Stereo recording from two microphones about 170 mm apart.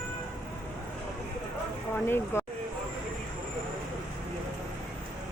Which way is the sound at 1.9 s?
15° left (ahead or behind).